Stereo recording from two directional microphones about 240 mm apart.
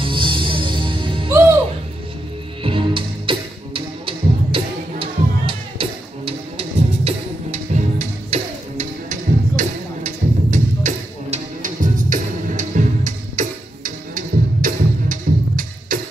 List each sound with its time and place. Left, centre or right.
0.0 s music: right
2.6 s music: right